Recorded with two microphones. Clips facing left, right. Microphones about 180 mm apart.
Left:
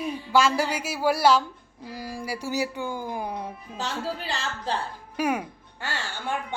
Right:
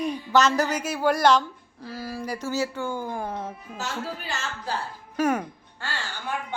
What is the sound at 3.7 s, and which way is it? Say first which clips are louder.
Speech: left 2 dB; 35° left (ahead or behind).